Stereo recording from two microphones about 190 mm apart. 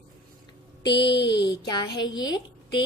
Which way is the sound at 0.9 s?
25° left (ahead or behind).